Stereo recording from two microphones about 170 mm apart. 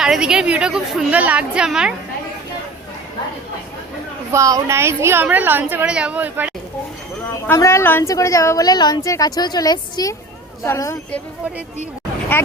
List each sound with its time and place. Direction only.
0.0 s a woman's voice: 5° right (ahead or behind)
4.3 s a woman's voice: 20° right (ahead or behind)
7.4 s a woman's voice: 15° left (ahead or behind)